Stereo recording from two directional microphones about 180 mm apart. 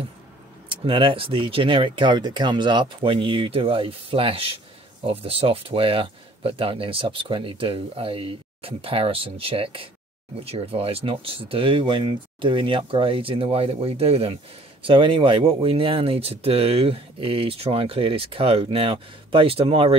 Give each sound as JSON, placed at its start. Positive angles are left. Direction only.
{"t": 0.7, "sound": "speech", "side_deg": -30}